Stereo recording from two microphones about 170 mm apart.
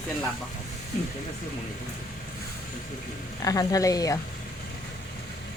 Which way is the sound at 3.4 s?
20° left (ahead or behind).